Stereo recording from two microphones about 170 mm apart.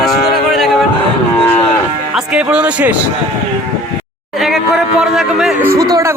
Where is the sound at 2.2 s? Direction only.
5° right (ahead or behind).